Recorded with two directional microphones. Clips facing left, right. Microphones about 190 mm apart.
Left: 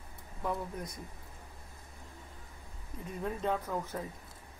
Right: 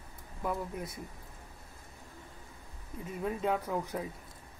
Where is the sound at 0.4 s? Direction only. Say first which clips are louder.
Right 1 dB; 5° right (ahead or behind).